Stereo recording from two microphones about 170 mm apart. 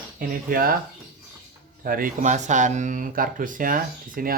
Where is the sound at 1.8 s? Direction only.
55° right (ahead or behind).